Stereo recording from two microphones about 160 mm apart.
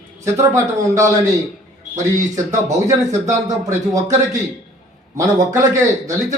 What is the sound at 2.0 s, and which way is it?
Speech, 50° right (ahead or behind).